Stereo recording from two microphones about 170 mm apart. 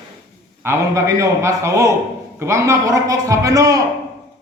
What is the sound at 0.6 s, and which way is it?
A man's voice, 15° right (ahead or behind).